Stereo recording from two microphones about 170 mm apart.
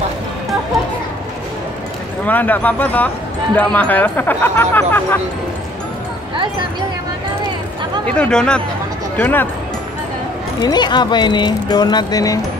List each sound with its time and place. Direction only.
2.2 s speech: 10° left (ahead or behind)
8.1 s speech: 5° left (ahead or behind)
10.6 s speech: 25° left (ahead or behind)